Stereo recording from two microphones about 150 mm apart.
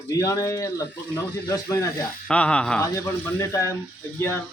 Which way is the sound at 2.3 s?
5° left (ahead or behind).